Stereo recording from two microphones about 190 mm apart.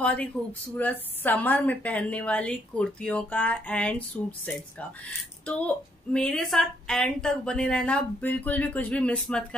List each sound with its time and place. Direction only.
0.0 s a woman's voice: 5° left (ahead or behind)
5.5 s a woman's voice: 5° left (ahead or behind)